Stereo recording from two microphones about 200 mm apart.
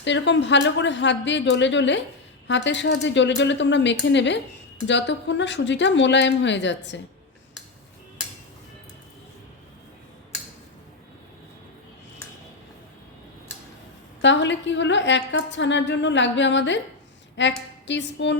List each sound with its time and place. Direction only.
0.0 s a woman's voice: 65° left (ahead or behind)
14.2 s a woman's voice: 65° left (ahead or behind)